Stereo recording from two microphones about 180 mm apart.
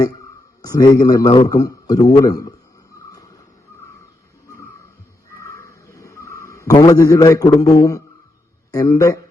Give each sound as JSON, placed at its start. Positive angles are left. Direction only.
{"t": 0.6, "sound": "a man's voice", "side_deg": 20}
{"t": 5.4, "sound": "a sound", "side_deg": 15}
{"t": 8.7, "sound": "a man's voice", "side_deg": 20}